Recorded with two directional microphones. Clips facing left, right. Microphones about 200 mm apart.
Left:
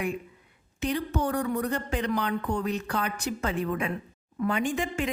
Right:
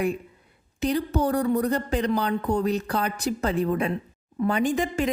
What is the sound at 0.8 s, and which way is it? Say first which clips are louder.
Speech: right 4 dB; 35° right (ahead or behind).